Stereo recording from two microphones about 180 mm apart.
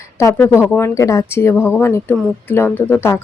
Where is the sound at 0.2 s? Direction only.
15° left (ahead or behind).